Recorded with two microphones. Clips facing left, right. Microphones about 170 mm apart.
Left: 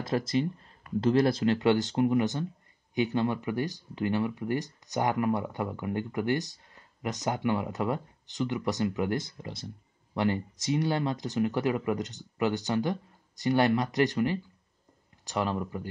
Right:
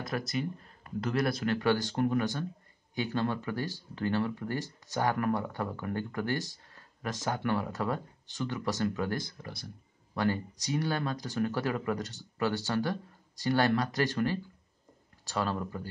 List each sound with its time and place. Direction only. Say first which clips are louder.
0.0 s speech: left 5 dB; 25° left (ahead or behind)